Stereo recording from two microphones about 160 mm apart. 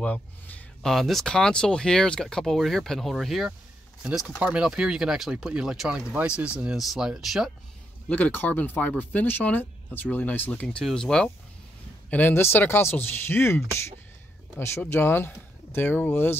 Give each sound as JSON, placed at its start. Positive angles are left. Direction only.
{"t": 0.0, "sound": "speech", "side_deg": 10}
{"t": 8.1, "sound": "speech", "side_deg": 10}
{"t": 14.6, "sound": "speech", "side_deg": 15}